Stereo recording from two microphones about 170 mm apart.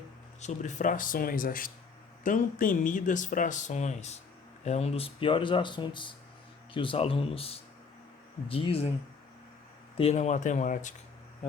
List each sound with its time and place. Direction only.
0.4 s speech: 45° left (ahead or behind)
10.0 s speech: 40° left (ahead or behind)